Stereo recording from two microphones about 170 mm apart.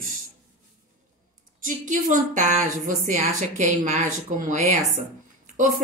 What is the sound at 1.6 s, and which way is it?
A woman's voice, 50° right (ahead or behind).